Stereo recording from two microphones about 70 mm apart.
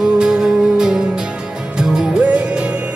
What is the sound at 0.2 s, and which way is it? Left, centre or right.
Music, centre.